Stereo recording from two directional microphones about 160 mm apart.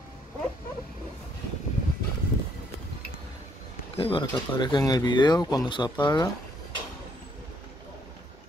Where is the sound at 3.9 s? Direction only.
30° left (ahead or behind).